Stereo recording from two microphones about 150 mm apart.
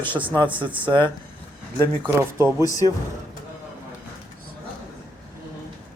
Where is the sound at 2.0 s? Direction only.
20° right (ahead or behind).